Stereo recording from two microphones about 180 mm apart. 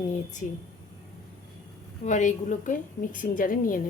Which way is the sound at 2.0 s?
40° left (ahead or behind).